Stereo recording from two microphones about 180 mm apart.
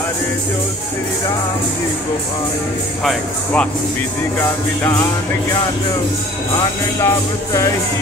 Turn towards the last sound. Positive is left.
turn(degrees=15)  # may be behind; listen again after turning